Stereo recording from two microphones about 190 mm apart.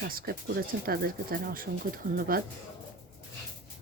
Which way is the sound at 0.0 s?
55° right (ahead or behind).